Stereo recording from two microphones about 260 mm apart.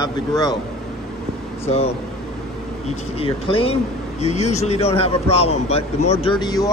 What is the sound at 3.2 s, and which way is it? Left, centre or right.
A man's voice, left.